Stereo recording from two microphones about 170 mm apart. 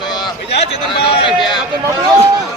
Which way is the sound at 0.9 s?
35° left (ahead or behind).